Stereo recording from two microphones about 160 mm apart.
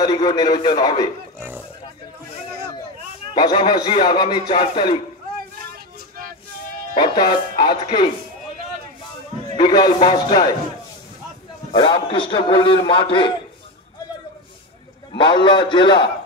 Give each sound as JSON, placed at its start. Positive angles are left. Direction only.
{"t": 0.0, "sound": "speech", "side_deg": 25}
{"t": 3.3, "sound": "speech", "side_deg": 30}
{"t": 7.0, "sound": "speech", "side_deg": 30}
{"t": 9.6, "sound": "speech", "side_deg": 25}
{"t": 11.7, "sound": "a man's voice", "side_deg": 30}
{"t": 15.1, "sound": "speech", "side_deg": 30}